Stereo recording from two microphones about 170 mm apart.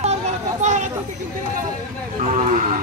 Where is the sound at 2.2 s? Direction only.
45° right (ahead or behind).